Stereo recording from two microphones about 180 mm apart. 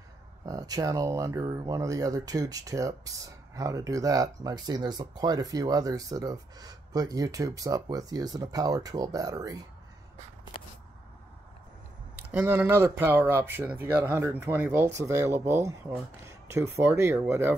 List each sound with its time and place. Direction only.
0.5 s speech: 20° right (ahead or behind)
12.2 s speech: 10° right (ahead or behind)